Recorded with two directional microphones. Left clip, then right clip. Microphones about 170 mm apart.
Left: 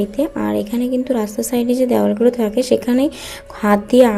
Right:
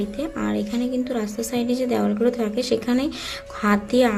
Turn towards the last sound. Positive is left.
turn(degrees=20)  # may be behind; listen again after turning